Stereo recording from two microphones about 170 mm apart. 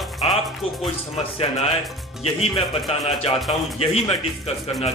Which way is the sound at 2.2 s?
35° left (ahead or behind).